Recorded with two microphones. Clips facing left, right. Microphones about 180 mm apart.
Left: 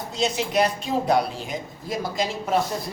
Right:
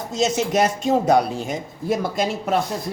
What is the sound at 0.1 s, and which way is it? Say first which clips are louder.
Speech: right 4 dB; 45° right (ahead or behind).